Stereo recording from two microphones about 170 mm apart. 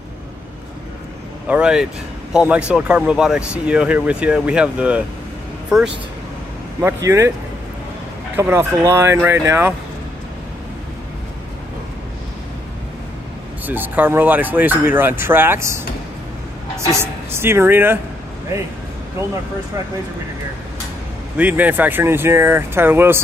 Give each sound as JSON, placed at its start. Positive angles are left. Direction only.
{"t": 1.5, "sound": "speech", "side_deg": -5}
{"t": 6.8, "sound": "speech", "side_deg": -15}
{"t": 8.4, "sound": "speech", "side_deg": -15}
{"t": 13.7, "sound": "speech", "side_deg": -10}
{"t": 21.4, "sound": "speech", "side_deg": -10}